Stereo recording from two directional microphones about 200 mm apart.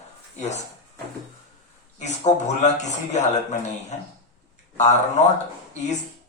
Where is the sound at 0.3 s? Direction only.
35° left (ahead or behind).